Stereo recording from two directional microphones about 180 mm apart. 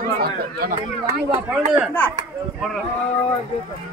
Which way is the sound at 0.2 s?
50° right (ahead or behind).